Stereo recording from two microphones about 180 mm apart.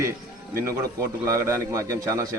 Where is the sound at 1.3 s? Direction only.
15° right (ahead or behind).